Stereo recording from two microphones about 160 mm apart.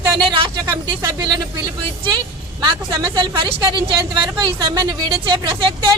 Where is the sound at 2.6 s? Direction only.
30° right (ahead or behind).